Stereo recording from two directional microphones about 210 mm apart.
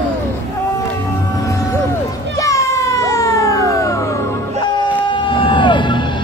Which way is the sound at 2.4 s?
15° left (ahead or behind).